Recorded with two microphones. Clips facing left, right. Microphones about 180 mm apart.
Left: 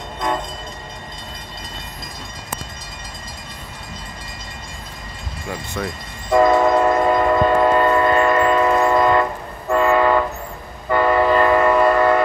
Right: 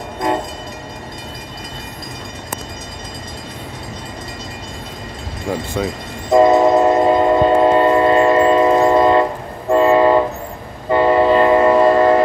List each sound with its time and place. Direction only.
5.8 s speech: 15° right (ahead or behind)
6.3 s train: 25° right (ahead or behind)